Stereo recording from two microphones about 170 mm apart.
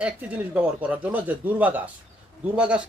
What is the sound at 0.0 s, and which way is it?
A man's voice, 10° right (ahead or behind).